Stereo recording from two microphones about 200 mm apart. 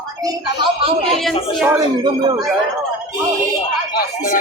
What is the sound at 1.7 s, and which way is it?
Speech, 20° right (ahead or behind).